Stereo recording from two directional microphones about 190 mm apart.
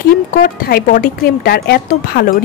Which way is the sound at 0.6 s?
50° left (ahead or behind).